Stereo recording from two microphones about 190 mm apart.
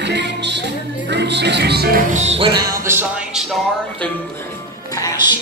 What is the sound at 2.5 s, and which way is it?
Music, 15° right (ahead or behind).